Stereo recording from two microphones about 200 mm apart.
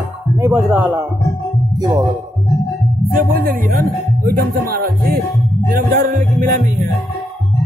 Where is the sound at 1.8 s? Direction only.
20° right (ahead or behind).